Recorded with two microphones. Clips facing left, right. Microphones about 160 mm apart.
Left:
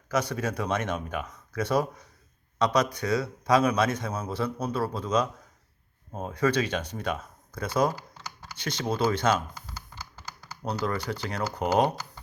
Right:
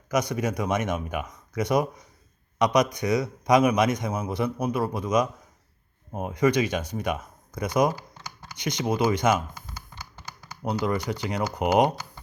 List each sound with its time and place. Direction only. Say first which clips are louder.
0.1 s a man's voice: right 3 dB; 15° right (ahead or behind)
10.4 s a man's voice: right 3 dB; 15° right (ahead or behind)